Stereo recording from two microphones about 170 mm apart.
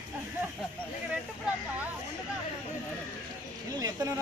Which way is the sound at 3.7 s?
20° right (ahead or behind).